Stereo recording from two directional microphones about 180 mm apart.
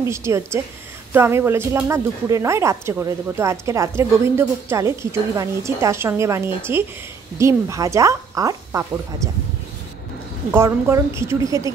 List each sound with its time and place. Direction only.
0.0 s a woman's voice: 15° right (ahead or behind)
10.5 s a woman's voice: 15° right (ahead or behind)